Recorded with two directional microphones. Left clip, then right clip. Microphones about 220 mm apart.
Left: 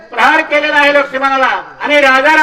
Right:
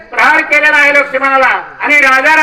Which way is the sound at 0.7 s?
25° right (ahead or behind).